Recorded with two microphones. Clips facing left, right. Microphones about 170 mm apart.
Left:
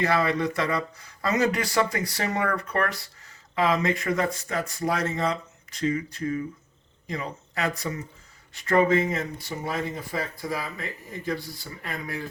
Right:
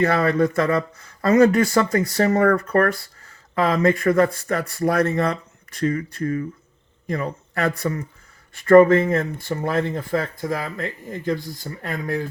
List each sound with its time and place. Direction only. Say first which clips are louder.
0.0 s speech: right 5 dB; 50° right (ahead or behind)